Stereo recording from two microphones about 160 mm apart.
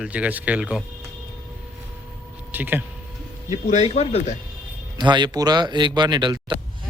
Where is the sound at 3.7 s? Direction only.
45° left (ahead or behind).